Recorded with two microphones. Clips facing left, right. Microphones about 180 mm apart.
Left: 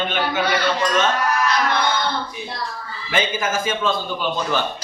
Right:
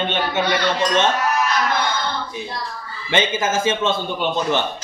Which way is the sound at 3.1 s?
25° right (ahead or behind).